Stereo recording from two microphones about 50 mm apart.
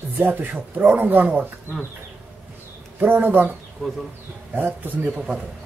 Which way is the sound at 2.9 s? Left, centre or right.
Right.